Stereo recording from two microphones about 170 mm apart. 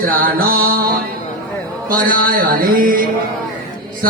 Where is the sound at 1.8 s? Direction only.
55° right (ahead or behind).